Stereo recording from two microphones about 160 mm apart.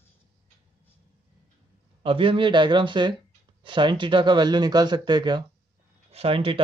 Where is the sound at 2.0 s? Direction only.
35° right (ahead or behind).